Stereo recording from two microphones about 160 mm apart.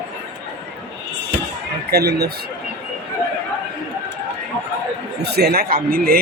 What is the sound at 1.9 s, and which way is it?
Speech, 85° right.